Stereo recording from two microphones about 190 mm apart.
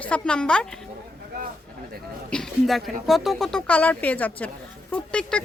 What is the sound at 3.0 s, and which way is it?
Speech, centre (ahead or behind).